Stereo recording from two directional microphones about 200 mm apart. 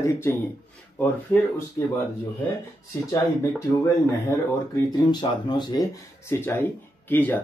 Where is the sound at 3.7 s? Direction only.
15° left (ahead or behind).